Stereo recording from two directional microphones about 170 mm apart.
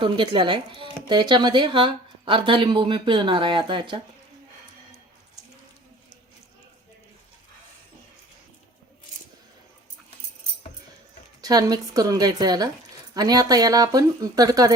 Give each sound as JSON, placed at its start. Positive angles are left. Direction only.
{"t": 0.0, "sound": "speech", "side_deg": -30}
{"t": 11.4, "sound": "speech", "side_deg": -20}